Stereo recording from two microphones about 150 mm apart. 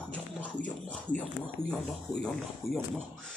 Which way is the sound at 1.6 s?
15° right (ahead or behind).